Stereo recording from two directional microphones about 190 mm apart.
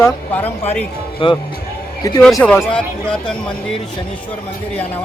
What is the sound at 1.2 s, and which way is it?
Speech, 30° left (ahead or behind).